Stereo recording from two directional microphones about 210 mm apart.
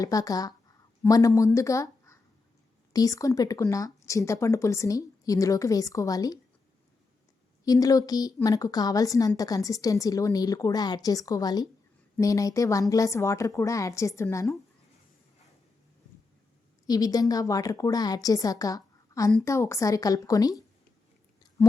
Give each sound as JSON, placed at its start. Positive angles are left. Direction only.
{"t": 0.0, "sound": "a woman's voice", "side_deg": 15}
{"t": 7.6, "sound": "a woman's voice", "side_deg": 15}
{"t": 16.8, "sound": "a woman's voice", "side_deg": 15}